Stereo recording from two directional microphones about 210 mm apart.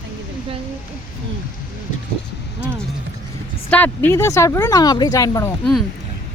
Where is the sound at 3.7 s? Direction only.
10° left (ahead or behind).